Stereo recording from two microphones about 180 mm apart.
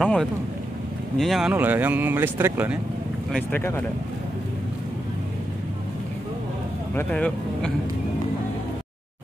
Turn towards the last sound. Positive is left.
turn(degrees=5)  # may be behind; listen again after turning